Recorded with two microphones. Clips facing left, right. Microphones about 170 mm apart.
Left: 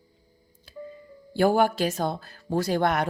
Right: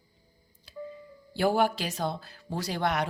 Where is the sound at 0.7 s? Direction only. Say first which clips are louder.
Left 1 dB; 50° left (ahead or behind).